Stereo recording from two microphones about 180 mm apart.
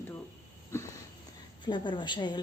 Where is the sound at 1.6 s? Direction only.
25° left (ahead or behind).